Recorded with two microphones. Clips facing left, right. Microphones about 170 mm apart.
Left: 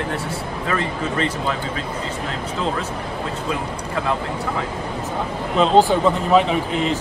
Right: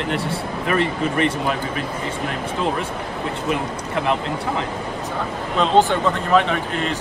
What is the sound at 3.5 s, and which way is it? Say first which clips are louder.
Speech: right 2 dB; 20° right (ahead or behind).